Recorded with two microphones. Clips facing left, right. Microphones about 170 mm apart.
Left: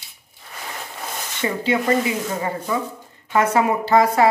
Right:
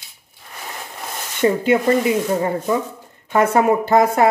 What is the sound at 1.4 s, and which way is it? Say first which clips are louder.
Speech: right 6 dB; 50° right (ahead or behind).